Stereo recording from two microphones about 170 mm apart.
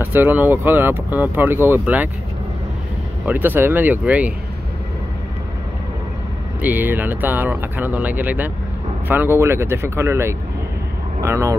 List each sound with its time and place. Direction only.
0.0 s speech: 10° right (ahead or behind)
3.3 s speech: 10° right (ahead or behind)
6.6 s speech: 10° right (ahead or behind)